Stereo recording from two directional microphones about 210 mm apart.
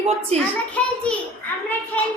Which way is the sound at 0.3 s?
30° right (ahead or behind).